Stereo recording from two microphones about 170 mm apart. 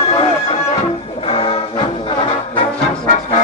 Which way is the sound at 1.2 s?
35° left (ahead or behind).